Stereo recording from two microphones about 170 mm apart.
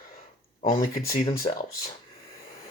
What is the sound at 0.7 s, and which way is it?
Speech, 55° left (ahead or behind).